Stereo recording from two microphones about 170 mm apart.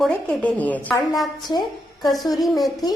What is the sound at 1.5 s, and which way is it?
Speech, 25° left (ahead or behind).